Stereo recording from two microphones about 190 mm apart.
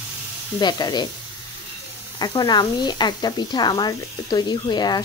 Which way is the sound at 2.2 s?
20° left (ahead or behind).